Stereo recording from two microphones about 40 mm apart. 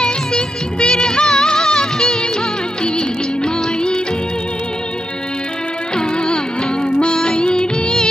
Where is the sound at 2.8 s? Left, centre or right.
Left.